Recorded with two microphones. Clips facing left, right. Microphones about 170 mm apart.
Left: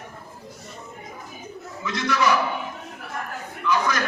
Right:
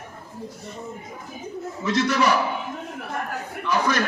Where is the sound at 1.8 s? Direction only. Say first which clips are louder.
Right 2 dB; 35° right (ahead or behind).